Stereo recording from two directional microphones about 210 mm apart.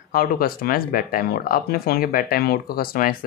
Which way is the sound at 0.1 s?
45° left (ahead or behind).